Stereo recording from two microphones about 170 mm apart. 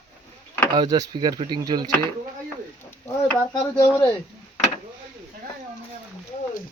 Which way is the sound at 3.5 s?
25° left (ahead or behind).